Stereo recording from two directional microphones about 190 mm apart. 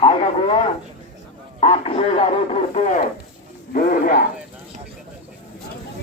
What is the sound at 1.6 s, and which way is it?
Speech, 30° left (ahead or behind).